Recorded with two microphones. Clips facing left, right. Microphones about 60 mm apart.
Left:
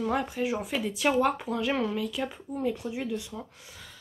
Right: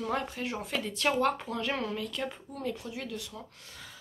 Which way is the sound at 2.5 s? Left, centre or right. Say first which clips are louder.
Left 6 dB; centre.